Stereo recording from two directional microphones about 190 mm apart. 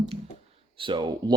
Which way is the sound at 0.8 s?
25° right (ahead or behind).